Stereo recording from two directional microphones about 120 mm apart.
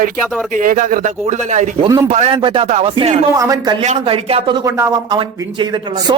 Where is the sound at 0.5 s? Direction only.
90° right.